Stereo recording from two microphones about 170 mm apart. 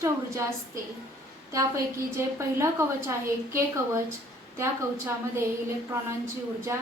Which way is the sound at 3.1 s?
15° right (ahead or behind).